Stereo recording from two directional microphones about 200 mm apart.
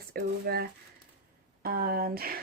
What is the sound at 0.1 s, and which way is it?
Speech, 50° right (ahead or behind).